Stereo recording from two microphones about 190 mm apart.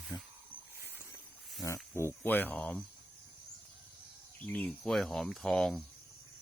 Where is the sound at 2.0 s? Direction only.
10° left (ahead or behind).